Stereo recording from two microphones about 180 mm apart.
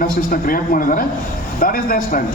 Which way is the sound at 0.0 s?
50° left (ahead or behind).